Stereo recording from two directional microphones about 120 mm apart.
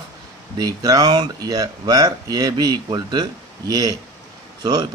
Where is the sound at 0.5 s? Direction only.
35° right (ahead or behind).